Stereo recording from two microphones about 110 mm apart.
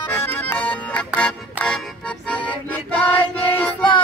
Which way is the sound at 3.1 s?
20° left (ahead or behind).